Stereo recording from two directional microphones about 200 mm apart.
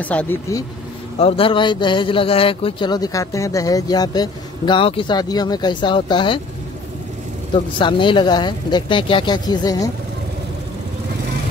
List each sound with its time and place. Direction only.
0.0 s speech: 5° left (ahead or behind)
1.2 s speech: 25° left (ahead or behind)
7.5 s speech: 25° left (ahead or behind)